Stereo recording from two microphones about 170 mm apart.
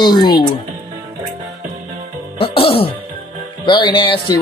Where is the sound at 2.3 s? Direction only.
35° left (ahead or behind).